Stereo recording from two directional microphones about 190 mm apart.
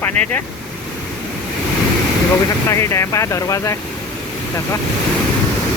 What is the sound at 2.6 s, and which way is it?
Speech, 15° left (ahead or behind).